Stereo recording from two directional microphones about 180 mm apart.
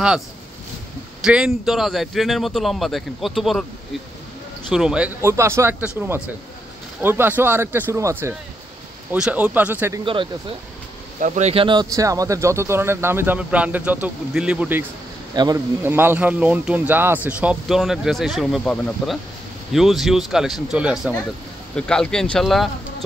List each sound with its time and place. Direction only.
1.2 s a man's voice: 5° right (ahead or behind)
4.7 s speech: 5° right (ahead or behind)
11.1 s speech: 40° right (ahead or behind); by 14.9 s 10° right (ahead or behind)
15.3 s a man's voice: 20° right (ahead or behind); by 22.7 s centre (ahead or behind)